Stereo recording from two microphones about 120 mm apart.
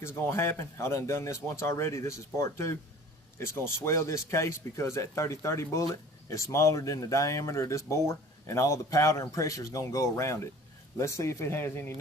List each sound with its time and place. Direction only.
0.0 s speech: 20° left (ahead or behind)